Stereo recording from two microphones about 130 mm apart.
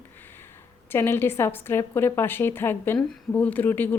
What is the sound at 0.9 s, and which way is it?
A woman's voice, 20° left (ahead or behind).